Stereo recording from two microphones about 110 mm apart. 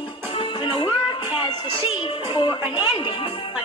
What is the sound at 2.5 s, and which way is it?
Speech, 15° right (ahead or behind).